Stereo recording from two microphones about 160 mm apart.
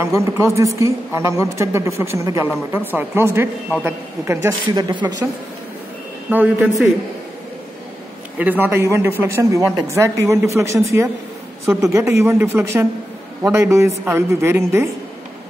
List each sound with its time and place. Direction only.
0.0 s a woman's voice: 15° right (ahead or behind)
6.3 s a woman's voice: 10° right (ahead or behind)
8.4 s a woman's voice: 10° right (ahead or behind)